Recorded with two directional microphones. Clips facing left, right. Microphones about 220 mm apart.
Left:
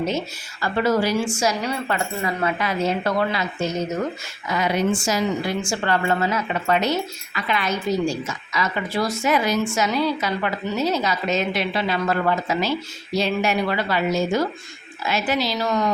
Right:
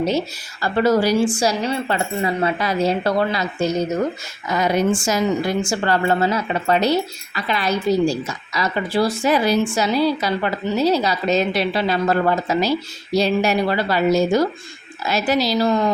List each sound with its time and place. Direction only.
0.0 s a woman's voice: 35° right (ahead or behind)
5.8 s a woman's voice: 35° right (ahead or behind)